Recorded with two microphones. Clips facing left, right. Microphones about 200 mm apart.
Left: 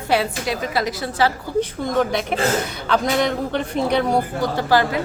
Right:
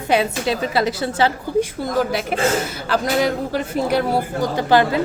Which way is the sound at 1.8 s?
5° right (ahead or behind).